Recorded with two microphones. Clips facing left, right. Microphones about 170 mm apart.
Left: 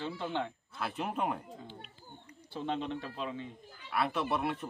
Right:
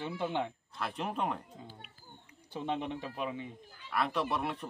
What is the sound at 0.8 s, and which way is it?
Speech, 5° left (ahead or behind).